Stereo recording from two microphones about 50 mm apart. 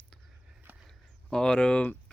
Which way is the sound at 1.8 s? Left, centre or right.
Left.